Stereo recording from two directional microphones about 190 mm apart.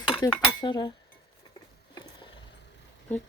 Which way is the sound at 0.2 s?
20° left (ahead or behind).